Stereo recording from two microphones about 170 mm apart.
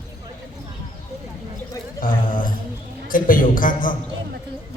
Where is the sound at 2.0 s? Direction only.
55° left (ahead or behind).